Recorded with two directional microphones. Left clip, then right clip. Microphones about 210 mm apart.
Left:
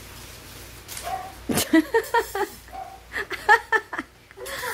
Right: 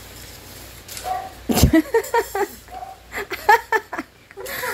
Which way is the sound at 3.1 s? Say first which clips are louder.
Right 3 dB; 15° right (ahead or behind).